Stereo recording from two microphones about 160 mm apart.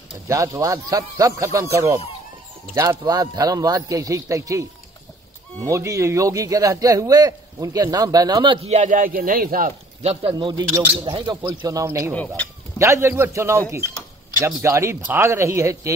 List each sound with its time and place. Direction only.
0.3 s a man's voice: 20° right (ahead or behind)
8.6 s speech: 50° right (ahead or behind)
10.0 s a man's voice: 35° right (ahead or behind); by 15.9 s 20° right (ahead or behind)